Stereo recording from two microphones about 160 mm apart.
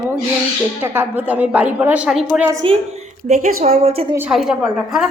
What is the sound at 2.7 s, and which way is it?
A woman's voice, 45° right (ahead or behind).